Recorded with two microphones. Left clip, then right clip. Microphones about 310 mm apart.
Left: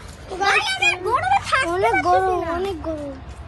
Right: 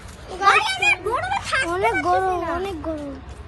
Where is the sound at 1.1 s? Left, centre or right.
Centre.